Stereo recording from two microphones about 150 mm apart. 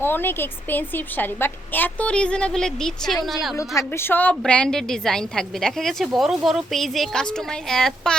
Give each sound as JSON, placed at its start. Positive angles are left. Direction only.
{"t": 0.0, "sound": "a woman's voice", "side_deg": 15}
{"t": 3.6, "sound": "a woman's voice", "side_deg": 20}